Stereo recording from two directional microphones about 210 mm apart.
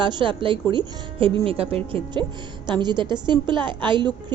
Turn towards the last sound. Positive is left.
turn(degrees=-20)  # may be behind; listen again after turning